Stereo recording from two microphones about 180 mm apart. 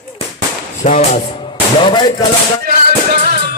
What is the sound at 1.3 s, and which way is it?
Music, 25° left (ahead or behind).